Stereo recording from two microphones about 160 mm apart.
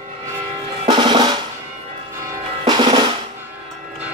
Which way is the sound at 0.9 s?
30° right (ahead or behind).